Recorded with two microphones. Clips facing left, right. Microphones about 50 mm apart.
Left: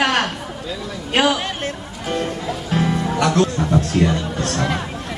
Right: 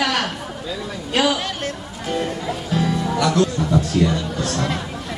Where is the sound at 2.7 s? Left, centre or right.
Left.